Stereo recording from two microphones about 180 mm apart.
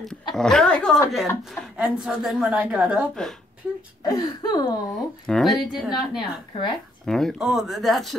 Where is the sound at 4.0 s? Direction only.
20° left (ahead or behind).